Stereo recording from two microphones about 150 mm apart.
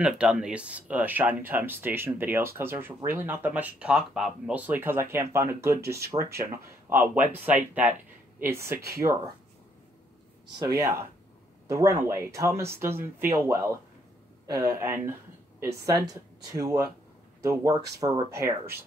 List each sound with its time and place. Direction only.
0.0 s speech: 5° right (ahead or behind)
10.6 s speech: 20° right (ahead or behind)